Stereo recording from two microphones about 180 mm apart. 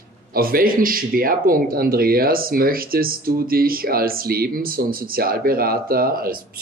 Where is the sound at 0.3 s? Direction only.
55° right (ahead or behind).